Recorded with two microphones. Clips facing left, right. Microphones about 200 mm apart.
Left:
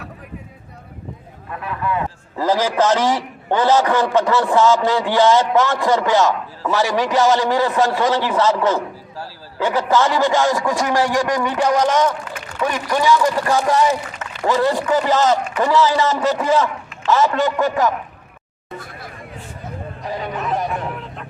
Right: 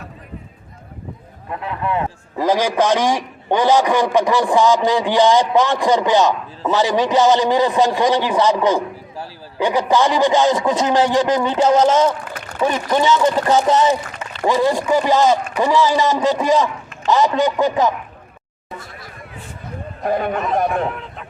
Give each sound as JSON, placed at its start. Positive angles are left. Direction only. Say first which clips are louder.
{"t": 1.5, "sound": "a man's voice", "louder": "right 1 dB", "side_deg": -25}
{"t": 18.8, "sound": "hubbub", "louder": "left 2 dB", "side_deg": 55}
{"t": 20.0, "sound": "a man's voice", "louder": "right 8 dB", "side_deg": -55}
{"t": 20.9, "sound": "a sound", "louder": "left 1 dB", "side_deg": 0}